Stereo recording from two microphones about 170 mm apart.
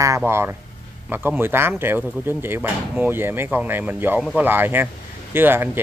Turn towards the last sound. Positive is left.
turn(degrees=-10)  # may be behind; listen again after turning